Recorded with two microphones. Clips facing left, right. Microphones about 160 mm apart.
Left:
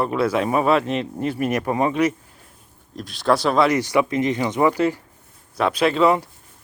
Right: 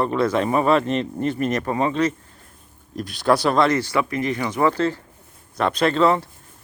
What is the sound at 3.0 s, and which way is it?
Speech, centre (ahead or behind).